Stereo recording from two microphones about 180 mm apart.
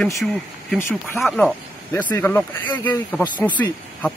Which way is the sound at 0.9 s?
Centre (ahead or behind).